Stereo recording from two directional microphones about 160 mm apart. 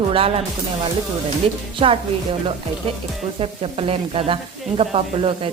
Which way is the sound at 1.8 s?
35° right (ahead or behind).